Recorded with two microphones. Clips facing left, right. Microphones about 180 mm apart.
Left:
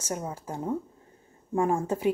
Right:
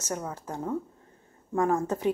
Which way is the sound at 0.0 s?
10° left (ahead or behind).